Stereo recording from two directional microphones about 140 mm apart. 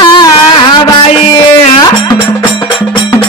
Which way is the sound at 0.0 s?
30° left (ahead or behind).